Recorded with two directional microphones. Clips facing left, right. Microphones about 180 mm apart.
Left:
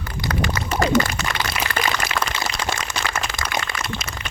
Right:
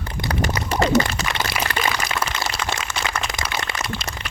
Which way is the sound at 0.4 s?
40° right (ahead or behind).